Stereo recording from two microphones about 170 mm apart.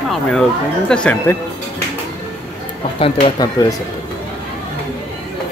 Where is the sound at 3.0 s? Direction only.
30° left (ahead or behind).